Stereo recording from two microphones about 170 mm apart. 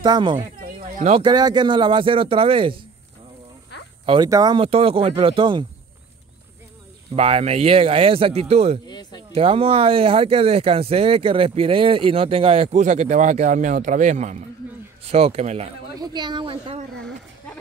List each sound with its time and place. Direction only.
0.0 s a woman's voice: 25° right (ahead or behind)
0.8 s a sound: 45° right (ahead or behind)
1.2 s speech: 25° right (ahead or behind)
4.0 s speech: 30° right (ahead or behind)
7.2 s speech: 35° right (ahead or behind)
8.8 s a sound: 25° left (ahead or behind)
9.3 s speech: 35° right (ahead or behind)
16.0 s a woman's voice: 25° right (ahead or behind)